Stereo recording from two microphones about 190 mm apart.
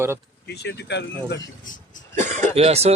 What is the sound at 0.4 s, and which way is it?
Speech, 60° left (ahead or behind).